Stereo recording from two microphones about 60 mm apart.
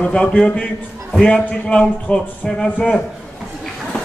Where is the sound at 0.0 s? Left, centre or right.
Centre.